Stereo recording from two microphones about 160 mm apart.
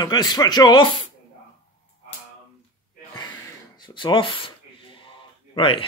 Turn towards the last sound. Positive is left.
turn(degrees=30)  # may be behind; listen again after turning